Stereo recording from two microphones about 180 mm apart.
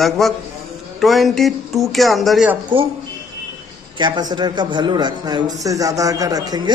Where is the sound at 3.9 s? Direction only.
25° right (ahead or behind).